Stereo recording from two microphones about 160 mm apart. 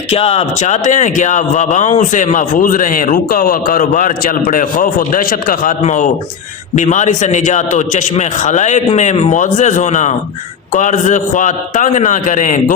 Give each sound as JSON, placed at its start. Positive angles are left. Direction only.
{"t": 0.1, "sound": "a man's voice", "side_deg": 40}
{"t": 5.8, "sound": "a man's voice", "side_deg": 45}